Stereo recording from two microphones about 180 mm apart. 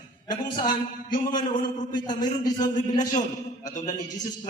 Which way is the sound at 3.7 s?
40° left (ahead or behind).